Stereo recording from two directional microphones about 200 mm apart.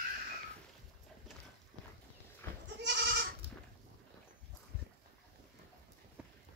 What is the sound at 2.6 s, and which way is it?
Goat, 60° right (ahead or behind).